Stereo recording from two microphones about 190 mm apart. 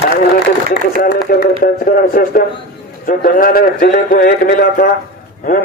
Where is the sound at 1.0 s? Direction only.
55° left (ahead or behind).